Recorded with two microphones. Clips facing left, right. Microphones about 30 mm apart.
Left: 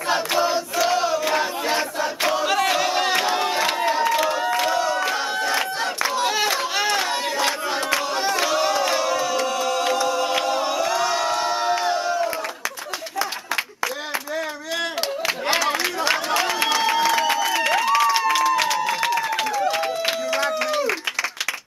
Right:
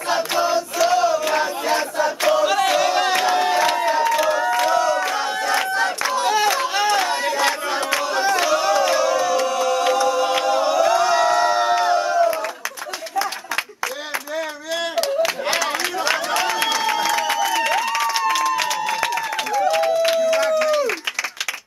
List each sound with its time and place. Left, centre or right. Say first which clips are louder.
0.1 s choir: right 1 dB; centre
0.7 s crowd: right 4 dB; centre
6.7 s chatter: right 3 dB; centre
7.0 s crowd: right 3 dB; centre
15.0 s a sound: right 5 dB; centre